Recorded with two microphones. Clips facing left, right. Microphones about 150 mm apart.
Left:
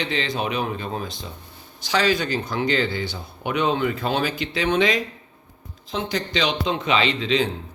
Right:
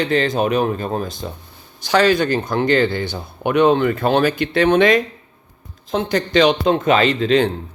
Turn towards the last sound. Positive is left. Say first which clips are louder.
# right 6 dB
turn(degrees=-50)  # may be behind; listen again after turning